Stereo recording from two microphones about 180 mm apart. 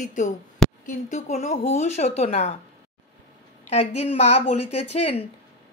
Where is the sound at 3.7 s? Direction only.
35° left (ahead or behind).